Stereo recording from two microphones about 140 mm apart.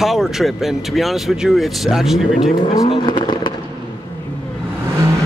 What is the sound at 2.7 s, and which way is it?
Speech, 35° left (ahead or behind).